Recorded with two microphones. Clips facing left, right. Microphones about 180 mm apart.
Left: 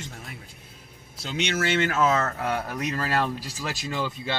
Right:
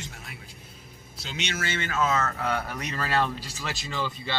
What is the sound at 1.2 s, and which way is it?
Speech, 55° left (ahead or behind).